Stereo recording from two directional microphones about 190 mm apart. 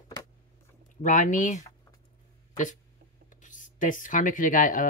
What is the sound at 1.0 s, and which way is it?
Speech, 40° left (ahead or behind).